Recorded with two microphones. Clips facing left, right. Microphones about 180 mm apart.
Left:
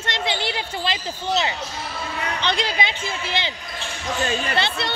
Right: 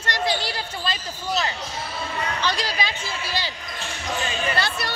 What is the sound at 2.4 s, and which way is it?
Speech, 25° left (ahead or behind).